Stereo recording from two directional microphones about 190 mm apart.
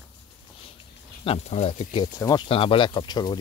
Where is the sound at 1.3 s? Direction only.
35° left (ahead or behind).